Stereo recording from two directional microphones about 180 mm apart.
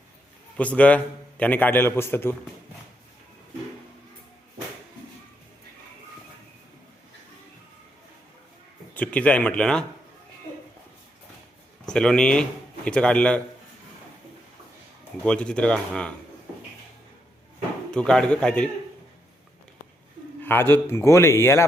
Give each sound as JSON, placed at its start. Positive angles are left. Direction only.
{"t": 0.5, "sound": "a man's voice", "side_deg": 10}
{"t": 9.0, "sound": "a man's voice", "side_deg": 5}
{"t": 11.9, "sound": "speech", "side_deg": 5}
{"t": 15.2, "sound": "speech", "side_deg": 5}
{"t": 17.9, "sound": "speech", "side_deg": 5}
{"t": 20.4, "sound": "a man's voice", "side_deg": 10}